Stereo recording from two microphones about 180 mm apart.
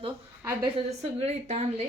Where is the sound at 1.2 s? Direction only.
40° right (ahead or behind).